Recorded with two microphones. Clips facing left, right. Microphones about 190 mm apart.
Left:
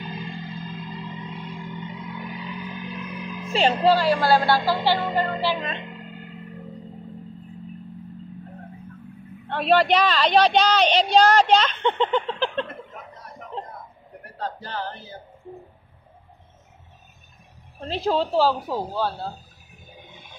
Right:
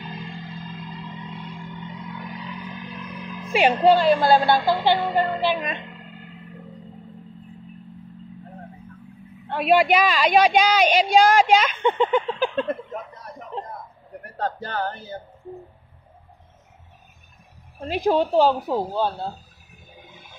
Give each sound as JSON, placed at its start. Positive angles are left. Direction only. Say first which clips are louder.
{"t": 0.1, "sound": "music", "louder": "left 2 dB", "side_deg": 0}
{"t": 3.8, "sound": "a woman's voice", "louder": "right 4 dB", "side_deg": -20}
{"t": 9.5, "sound": "a woman's voice", "louder": "right 1 dB", "side_deg": -10}
{"t": 14.4, "sound": "speech", "louder": "right 4 dB", "side_deg": -50}
{"t": 17.7, "sound": "a woman's voice", "louder": "right 3 dB", "side_deg": -10}